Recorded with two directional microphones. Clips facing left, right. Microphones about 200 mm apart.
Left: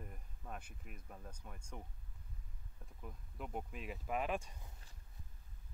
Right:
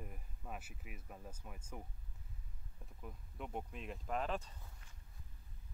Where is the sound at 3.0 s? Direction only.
Centre (ahead or behind).